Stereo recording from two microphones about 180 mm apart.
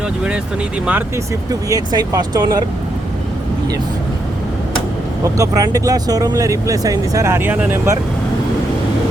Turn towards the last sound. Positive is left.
turn(degrees=-10)  # may be behind; listen again after turning